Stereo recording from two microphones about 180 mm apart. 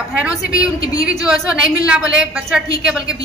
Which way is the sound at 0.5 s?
20° left (ahead or behind).